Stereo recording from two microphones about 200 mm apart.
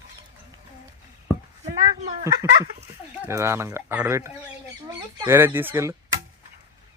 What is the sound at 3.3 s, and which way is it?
Speech, 15° right (ahead or behind).